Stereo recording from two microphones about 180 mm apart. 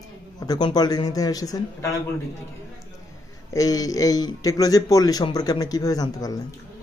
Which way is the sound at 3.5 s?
20° left (ahead or behind).